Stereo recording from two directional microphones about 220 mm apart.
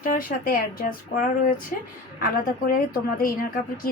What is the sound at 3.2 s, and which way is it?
Speech, 40° left (ahead or behind).